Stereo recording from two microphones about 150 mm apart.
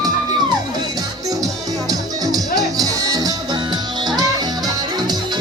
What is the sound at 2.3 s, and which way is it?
Music, 25° right (ahead or behind).